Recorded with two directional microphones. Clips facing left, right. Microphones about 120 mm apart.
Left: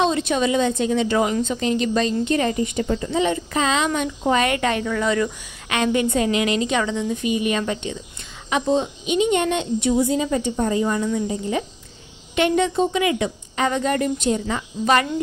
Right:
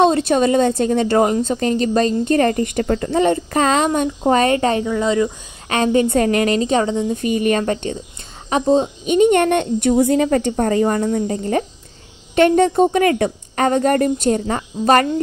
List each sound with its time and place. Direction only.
0.0 s a woman's voice: 45° right (ahead or behind)
4.8 s speech: 20° right (ahead or behind)
5.7 s a woman's voice: 35° right (ahead or behind)
8.5 s a woman's voice: 40° right (ahead or behind)